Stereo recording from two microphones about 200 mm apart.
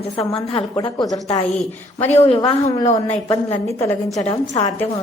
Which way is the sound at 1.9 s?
30° left (ahead or behind).